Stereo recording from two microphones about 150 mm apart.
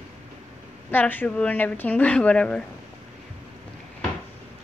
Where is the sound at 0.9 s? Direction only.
10° left (ahead or behind).